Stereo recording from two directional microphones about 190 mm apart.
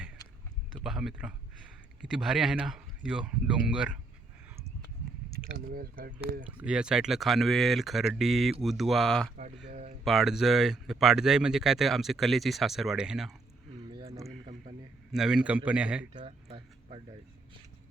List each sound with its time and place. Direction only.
0.9 s speech: centre (ahead or behind)
5.3 s speech: 50° right (ahead or behind)
6.6 s speech: 5° right (ahead or behind)
9.6 s speech: 35° right (ahead or behind)
10.0 s speech: centre (ahead or behind)
13.9 s a sound: 30° right (ahead or behind)
15.1 s speech: 5° right (ahead or behind)
16.1 s a sound: 30° right (ahead or behind)